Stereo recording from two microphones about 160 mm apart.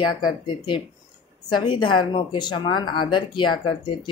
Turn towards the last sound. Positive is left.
turn(degrees=30)  # may be behind; listen again after turning